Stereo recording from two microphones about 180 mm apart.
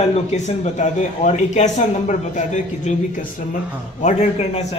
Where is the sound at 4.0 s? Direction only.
40° left (ahead or behind).